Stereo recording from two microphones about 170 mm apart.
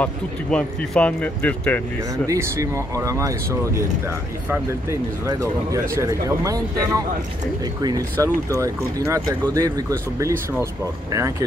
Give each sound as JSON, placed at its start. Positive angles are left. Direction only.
{"t": 0.0, "sound": "speech", "side_deg": 5}
{"t": 2.2, "sound": "speech", "side_deg": -15}
{"t": 5.2, "sound": "speech", "side_deg": -20}